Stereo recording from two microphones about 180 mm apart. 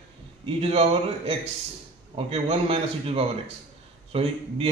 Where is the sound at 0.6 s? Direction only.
35° right (ahead or behind).